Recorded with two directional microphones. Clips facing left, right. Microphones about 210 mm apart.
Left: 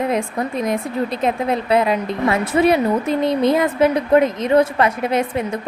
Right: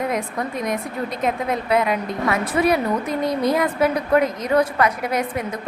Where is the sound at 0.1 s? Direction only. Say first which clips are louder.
Left 4 dB; 25° left (ahead or behind).